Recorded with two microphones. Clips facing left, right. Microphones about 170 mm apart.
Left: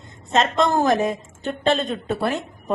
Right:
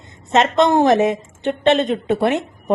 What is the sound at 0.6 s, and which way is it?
A woman's voice, 20° right (ahead or behind).